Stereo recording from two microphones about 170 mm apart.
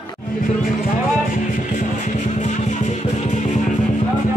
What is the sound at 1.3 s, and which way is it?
Music, 50° left (ahead or behind).